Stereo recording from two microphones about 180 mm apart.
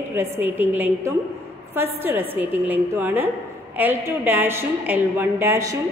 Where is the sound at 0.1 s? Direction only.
10° right (ahead or behind).